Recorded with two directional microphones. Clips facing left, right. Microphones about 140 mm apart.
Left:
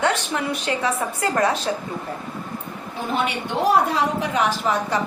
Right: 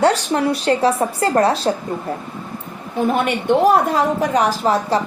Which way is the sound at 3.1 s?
50° right (ahead or behind).